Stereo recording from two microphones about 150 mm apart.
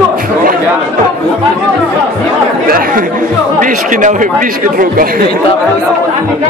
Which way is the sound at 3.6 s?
60° right (ahead or behind).